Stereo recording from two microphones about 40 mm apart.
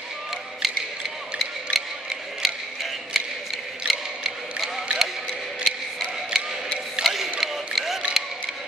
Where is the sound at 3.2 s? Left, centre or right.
Centre.